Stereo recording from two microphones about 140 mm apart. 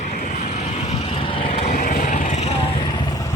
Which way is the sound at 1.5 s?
55° left (ahead or behind).